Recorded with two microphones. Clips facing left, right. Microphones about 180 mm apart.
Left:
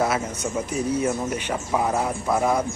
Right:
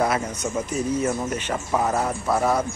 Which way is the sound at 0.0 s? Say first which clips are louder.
Even; 5° left (ahead or behind).